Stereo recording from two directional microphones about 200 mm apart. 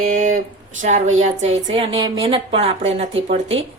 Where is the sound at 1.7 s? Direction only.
25° right (ahead or behind).